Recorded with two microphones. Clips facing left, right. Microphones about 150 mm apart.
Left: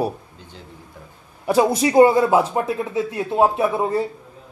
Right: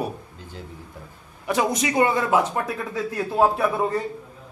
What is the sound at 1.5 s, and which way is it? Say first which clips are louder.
A man's voice: left 6 dB; 30° left (ahead or behind).